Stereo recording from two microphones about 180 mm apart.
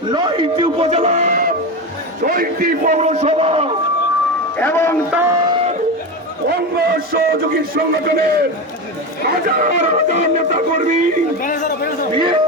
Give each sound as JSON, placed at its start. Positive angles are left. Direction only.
{"t": 0.1, "sound": "music", "side_deg": -25}
{"t": 2.2, "sound": "a man's voice", "side_deg": -50}
{"t": 4.5, "sound": "speech", "side_deg": 10}
{"t": 5.1, "sound": "speech", "side_deg": -15}
{"t": 6.5, "sound": "a man's voice", "side_deg": -60}
{"t": 9.6, "sound": "a man's voice", "side_deg": -40}
{"t": 11.4, "sound": "a man's voice", "side_deg": 45}
{"t": 12.1, "sound": "a man's voice", "side_deg": -25}